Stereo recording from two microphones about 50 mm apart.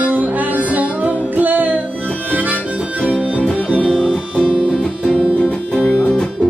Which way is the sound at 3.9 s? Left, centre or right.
Centre.